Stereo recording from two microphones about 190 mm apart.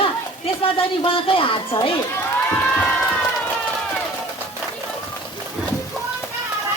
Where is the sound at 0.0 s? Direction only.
30° left (ahead or behind).